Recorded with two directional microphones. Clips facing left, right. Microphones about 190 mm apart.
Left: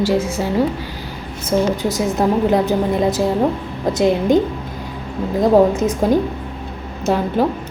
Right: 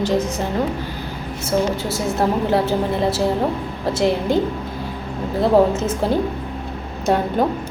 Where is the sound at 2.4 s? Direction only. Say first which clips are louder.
Left 3 dB; 20° left (ahead or behind).